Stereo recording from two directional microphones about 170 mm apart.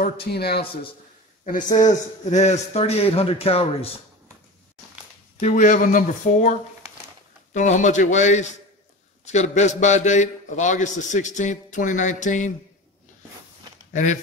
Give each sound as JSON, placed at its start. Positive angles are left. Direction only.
{"t": 0.0, "sound": "speech", "side_deg": 70}
{"t": 1.4, "sound": "a man's voice", "side_deg": 50}
{"t": 5.4, "sound": "a man's voice", "side_deg": 50}
{"t": 7.5, "sound": "a man's voice", "side_deg": 45}